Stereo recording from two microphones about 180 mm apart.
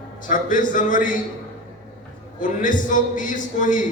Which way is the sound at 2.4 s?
45° left (ahead or behind).